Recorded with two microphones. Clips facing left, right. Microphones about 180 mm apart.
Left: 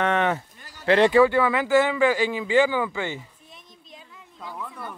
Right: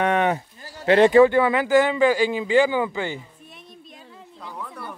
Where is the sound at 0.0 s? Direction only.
15° right (ahead or behind).